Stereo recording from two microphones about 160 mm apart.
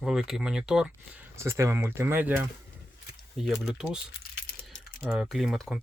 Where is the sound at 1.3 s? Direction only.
15° right (ahead or behind).